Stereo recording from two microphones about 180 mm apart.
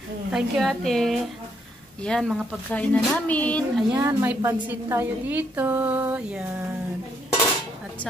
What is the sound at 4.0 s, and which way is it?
A woman's voice, 15° right (ahead or behind).